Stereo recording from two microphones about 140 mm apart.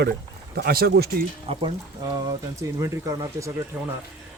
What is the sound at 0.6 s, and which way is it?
Speech, 90° right.